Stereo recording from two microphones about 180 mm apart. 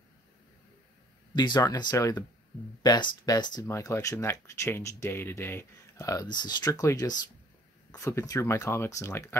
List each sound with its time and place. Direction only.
1.3 s speech: 25° left (ahead or behind)